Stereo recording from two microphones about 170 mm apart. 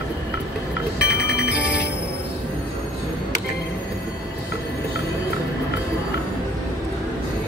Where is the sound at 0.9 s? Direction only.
75° left (ahead or behind).